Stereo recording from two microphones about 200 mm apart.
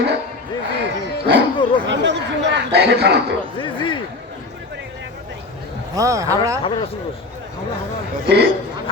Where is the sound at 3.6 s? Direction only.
25° left (ahead or behind).